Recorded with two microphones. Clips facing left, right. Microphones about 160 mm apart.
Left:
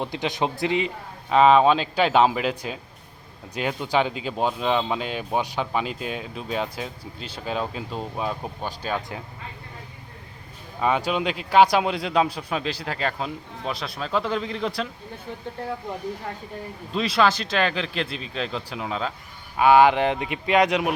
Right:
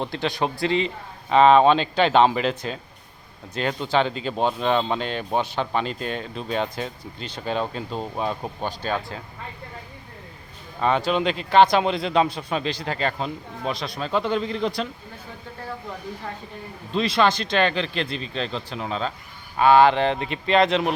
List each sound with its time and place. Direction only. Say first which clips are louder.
0.0 s speech: right 1 dB; 15° left (ahead or behind)
1.3 s speech: right 1 dB; centre (ahead or behind)
10.8 s speech: right 2 dB; 10° left (ahead or behind)
16.9 s speech: right 1 dB; 5° left (ahead or behind)